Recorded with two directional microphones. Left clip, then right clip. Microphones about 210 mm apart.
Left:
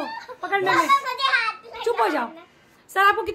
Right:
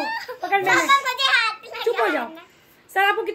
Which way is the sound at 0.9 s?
30° right (ahead or behind).